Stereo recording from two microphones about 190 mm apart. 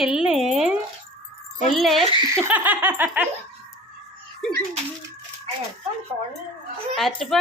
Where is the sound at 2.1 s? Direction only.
25° right (ahead or behind).